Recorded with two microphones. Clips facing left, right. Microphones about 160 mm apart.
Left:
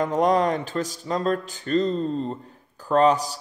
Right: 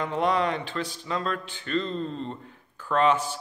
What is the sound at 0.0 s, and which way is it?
Speech, 40° left (ahead or behind).